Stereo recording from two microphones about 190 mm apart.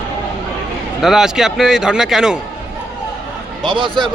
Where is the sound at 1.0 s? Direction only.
Centre (ahead or behind).